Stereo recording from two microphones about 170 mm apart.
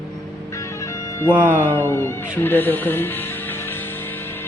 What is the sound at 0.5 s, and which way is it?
Music, 15° left (ahead or behind).